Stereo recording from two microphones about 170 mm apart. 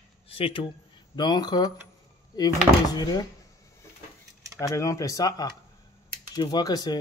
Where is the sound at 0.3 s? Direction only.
30° left (ahead or behind).